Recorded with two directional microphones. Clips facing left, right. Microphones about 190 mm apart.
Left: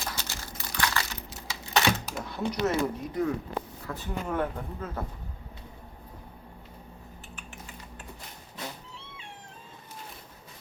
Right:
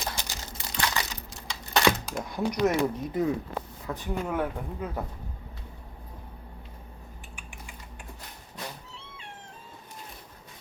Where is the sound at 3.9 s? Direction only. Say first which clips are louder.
Right 1 dB; 10° right (ahead or behind).